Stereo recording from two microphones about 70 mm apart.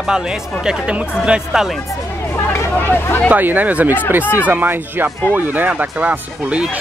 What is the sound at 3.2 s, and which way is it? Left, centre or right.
Speech, right.